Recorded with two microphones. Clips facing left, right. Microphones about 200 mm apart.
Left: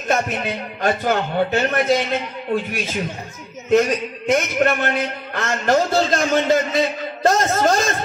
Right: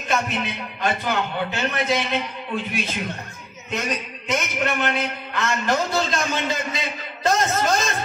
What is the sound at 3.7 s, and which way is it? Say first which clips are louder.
A man's voice: left 11 dB; 55° left (ahead or behind).